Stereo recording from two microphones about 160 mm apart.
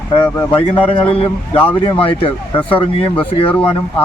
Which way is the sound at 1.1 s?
35° left (ahead or behind).